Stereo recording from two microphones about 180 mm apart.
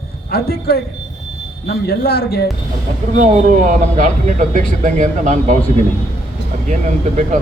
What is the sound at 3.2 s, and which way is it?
A man's voice, 45° right (ahead or behind).